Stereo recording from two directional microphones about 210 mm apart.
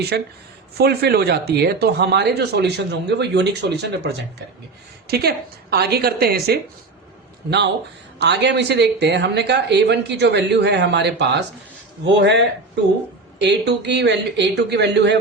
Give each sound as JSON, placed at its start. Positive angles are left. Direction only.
{"t": 0.1, "sound": "speech", "side_deg": -55}
{"t": 5.7, "sound": "speech", "side_deg": -50}
{"t": 8.2, "sound": "speech", "side_deg": -55}